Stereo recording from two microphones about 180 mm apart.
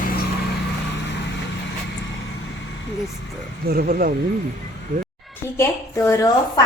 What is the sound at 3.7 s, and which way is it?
Speech, 55° right (ahead or behind).